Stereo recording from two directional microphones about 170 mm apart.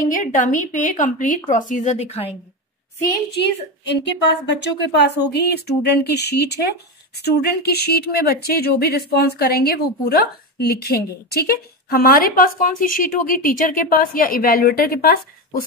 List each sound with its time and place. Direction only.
0.1 s speech: 50° left (ahead or behind)
3.3 s a woman's voice: 85° left; by 15.6 s 60° left (ahead or behind)